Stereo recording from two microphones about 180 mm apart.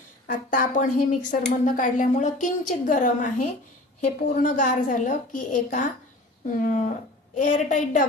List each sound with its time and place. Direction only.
0.3 s a woman's voice: 45° left (ahead or behind)